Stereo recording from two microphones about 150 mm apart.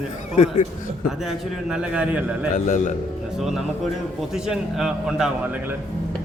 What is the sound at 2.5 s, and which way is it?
Speech, 60° left (ahead or behind).